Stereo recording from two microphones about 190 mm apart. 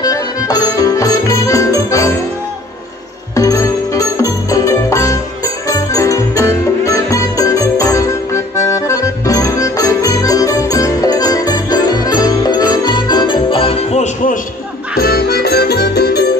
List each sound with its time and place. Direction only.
0.0 s music: 20° left (ahead or behind)
3.3 s music: 15° left (ahead or behind); by 14.4 s 40° left (ahead or behind)
15.0 s music: 50° left (ahead or behind)